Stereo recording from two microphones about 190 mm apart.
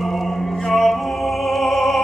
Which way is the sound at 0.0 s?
Centre (ahead or behind).